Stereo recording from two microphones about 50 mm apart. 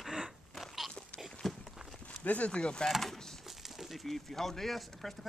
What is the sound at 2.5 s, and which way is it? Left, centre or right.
Speech, centre.